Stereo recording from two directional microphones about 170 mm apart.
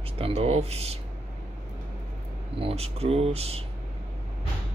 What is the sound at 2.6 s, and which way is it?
Speech, 35° right (ahead or behind).